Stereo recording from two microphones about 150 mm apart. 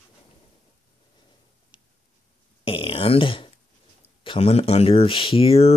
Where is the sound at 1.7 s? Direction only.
30° left (ahead or behind).